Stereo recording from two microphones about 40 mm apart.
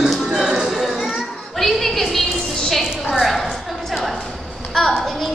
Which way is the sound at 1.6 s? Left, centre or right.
Centre.